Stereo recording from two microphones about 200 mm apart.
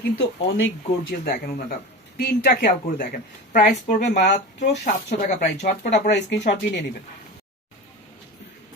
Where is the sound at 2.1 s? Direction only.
50° left (ahead or behind).